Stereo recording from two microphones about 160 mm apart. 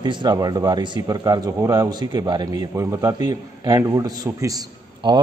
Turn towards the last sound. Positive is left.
turn(degrees=-25)  # may be behind; listen again after turning